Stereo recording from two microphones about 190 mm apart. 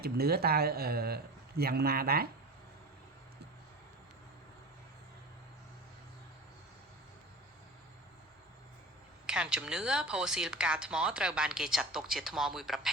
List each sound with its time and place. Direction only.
0.0 s speech: 55° right (ahead or behind)
9.2 s speech: 5° right (ahead or behind)